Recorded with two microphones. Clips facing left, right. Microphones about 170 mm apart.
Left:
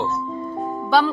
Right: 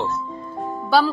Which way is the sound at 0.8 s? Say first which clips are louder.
Even; 5° right (ahead or behind).